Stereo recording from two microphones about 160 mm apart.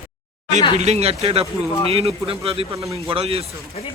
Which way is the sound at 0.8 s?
40° right (ahead or behind).